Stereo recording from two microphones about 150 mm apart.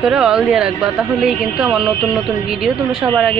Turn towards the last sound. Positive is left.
turn(degrees=-5)  # may be behind; listen again after turning